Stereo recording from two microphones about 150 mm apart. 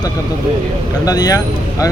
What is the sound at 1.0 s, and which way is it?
Speech, 25° left (ahead or behind).